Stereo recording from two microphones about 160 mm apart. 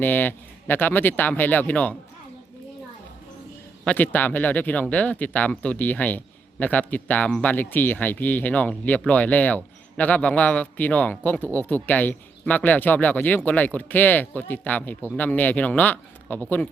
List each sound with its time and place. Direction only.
0.0 s speech: 10° left (ahead or behind)
3.8 s speech: 10° left (ahead or behind)